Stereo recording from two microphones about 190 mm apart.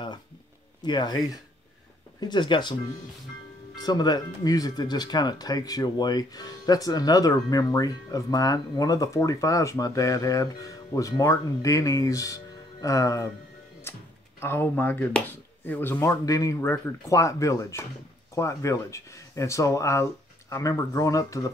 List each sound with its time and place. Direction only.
0.8 s speech: 25° left (ahead or behind)
3.7 s speech: 20° left (ahead or behind)
14.4 s speech: 10° left (ahead or behind)